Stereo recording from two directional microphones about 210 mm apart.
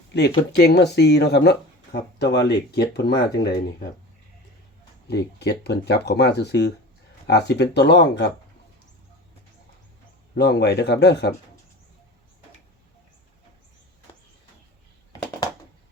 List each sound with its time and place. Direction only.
0.1 s speech: 55° left (ahead or behind)
5.0 s speech: 55° left (ahead or behind)
10.3 s speech: 55° left (ahead or behind)